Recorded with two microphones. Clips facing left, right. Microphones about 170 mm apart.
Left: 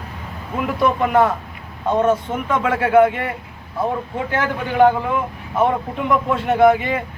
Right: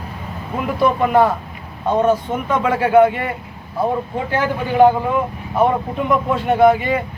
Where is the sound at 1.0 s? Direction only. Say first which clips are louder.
Right 2 dB; 15° right (ahead or behind).